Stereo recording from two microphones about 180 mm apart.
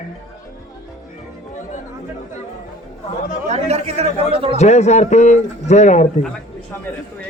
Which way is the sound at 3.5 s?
35° right (ahead or behind).